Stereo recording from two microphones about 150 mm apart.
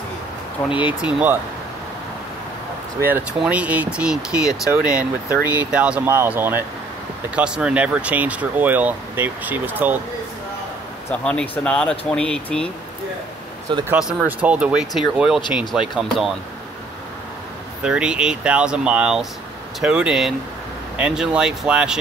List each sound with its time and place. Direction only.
0.7 s speech: 30° left (ahead or behind)
1.0 s speech: 10° right (ahead or behind)
3.0 s speech: 15° right (ahead or behind)
11.2 s speech: 5° left (ahead or behind)
13.9 s speech: 5° right (ahead or behind)
17.8 s speech: 5° right (ahead or behind)